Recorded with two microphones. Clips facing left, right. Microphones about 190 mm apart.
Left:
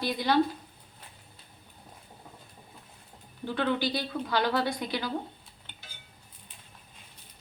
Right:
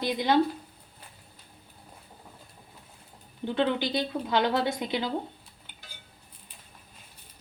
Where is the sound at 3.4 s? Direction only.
20° right (ahead or behind).